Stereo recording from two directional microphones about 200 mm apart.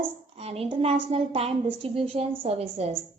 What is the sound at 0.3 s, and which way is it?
A woman's voice, 30° right (ahead or behind).